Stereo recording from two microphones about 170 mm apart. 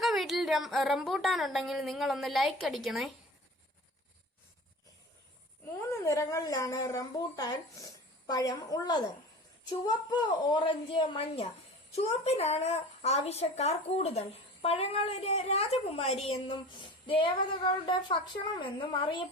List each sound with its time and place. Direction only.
0.0 s speech: centre (ahead or behind)
5.9 s a woman's voice: 20° left (ahead or behind)